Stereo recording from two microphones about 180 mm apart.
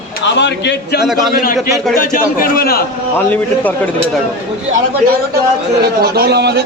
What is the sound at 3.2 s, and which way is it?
Speech, 10° left (ahead or behind).